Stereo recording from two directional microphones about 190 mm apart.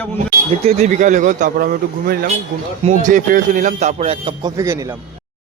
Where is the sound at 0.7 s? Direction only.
40° right (ahead or behind).